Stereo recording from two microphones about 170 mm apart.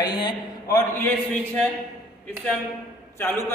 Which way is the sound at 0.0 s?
25° left (ahead or behind).